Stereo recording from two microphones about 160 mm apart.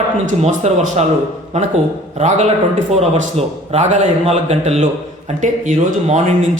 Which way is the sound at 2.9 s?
40° right (ahead or behind).